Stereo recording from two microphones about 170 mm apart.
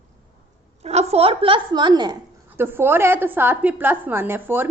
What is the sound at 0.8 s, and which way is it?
A woman's voice, 40° right (ahead or behind).